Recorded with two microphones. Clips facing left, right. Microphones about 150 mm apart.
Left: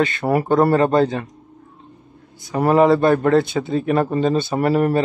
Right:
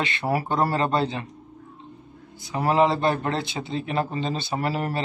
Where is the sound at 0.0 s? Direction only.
45° left (ahead or behind).